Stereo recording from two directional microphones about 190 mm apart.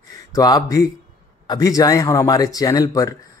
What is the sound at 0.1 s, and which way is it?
Speech, 15° left (ahead or behind).